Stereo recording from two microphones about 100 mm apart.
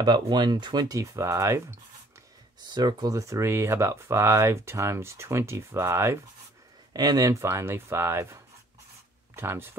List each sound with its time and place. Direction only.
0.0 s speech: 45° right (ahead or behind); by 1.6 s 30° right (ahead or behind)
2.7 s speech: 45° right (ahead or behind); by 6.1 s 25° right (ahead or behind)
6.9 s speech: 40° right (ahead or behind); by 9.7 s 25° right (ahead or behind)